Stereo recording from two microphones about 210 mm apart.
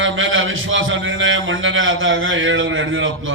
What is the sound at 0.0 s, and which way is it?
A man's voice, 65° right (ahead or behind).